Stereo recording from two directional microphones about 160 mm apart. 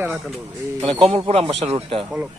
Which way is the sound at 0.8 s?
35° right (ahead or behind).